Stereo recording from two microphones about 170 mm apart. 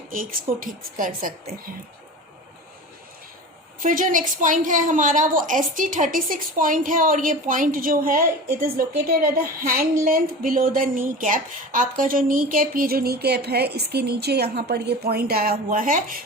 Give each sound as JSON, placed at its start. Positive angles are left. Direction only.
{"t": 0.1, "sound": "a woman's voice", "side_deg": -55}
{"t": 3.8, "sound": "a woman's voice", "side_deg": -50}